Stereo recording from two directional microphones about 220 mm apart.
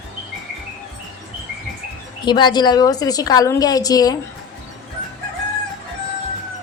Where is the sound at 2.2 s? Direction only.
20° left (ahead or behind).